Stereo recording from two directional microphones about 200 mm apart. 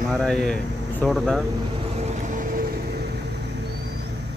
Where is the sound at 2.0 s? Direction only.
35° right (ahead or behind).